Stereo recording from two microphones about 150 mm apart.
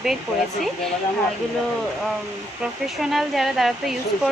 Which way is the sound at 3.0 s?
Centre (ahead or behind).